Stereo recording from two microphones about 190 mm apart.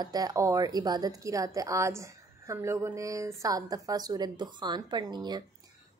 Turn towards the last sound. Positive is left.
turn(degrees=-20)  # may be behind; listen again after turning